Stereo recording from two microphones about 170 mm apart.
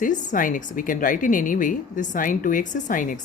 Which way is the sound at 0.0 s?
50° left (ahead or behind).